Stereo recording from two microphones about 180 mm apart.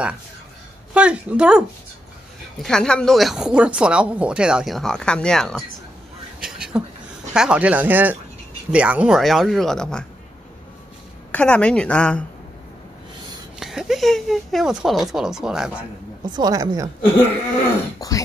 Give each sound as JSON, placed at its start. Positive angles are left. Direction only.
{"t": 0.9, "sound": "speech", "side_deg": -5}
{"t": 2.6, "sound": "speech", "side_deg": 5}
{"t": 6.4, "sound": "a sound", "side_deg": -5}
{"t": 7.3, "sound": "speech", "side_deg": -5}
{"t": 11.3, "sound": "speech", "side_deg": 5}
{"t": 13.6, "sound": "speech", "side_deg": 0}
{"t": 16.3, "sound": "a woman's voice", "side_deg": -20}
{"t": 18.0, "sound": "beatboxing", "side_deg": 20}